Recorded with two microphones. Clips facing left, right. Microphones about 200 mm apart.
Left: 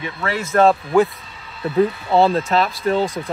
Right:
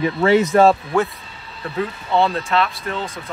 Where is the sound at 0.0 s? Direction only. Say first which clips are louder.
Right 10 dB; 30° right (ahead or behind).